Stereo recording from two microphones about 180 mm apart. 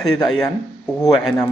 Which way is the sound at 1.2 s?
5° left (ahead or behind).